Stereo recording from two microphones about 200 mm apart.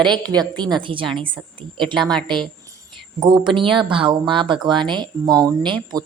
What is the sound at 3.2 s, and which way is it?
A woman's voice, 25° right (ahead or behind).